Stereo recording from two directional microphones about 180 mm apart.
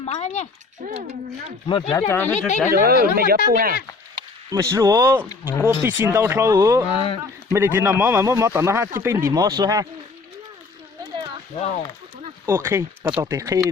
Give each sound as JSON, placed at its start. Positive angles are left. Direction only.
{"t": 0.0, "sound": "speech", "side_deg": 35}
{"t": 0.8, "sound": "speech", "side_deg": -50}
{"t": 1.9, "sound": "speech", "side_deg": 15}
{"t": 2.7, "sound": "speech", "side_deg": -55}
{"t": 4.5, "sound": "speech", "side_deg": -20}
{"t": 5.3, "sound": "speech", "side_deg": 20}
{"t": 5.8, "sound": "speech", "side_deg": -10}
{"t": 6.9, "sound": "speech", "side_deg": 30}
{"t": 7.5, "sound": "speech", "side_deg": -15}
{"t": 11.5, "sound": "speech", "side_deg": 45}
{"t": 12.5, "sound": "speech", "side_deg": -15}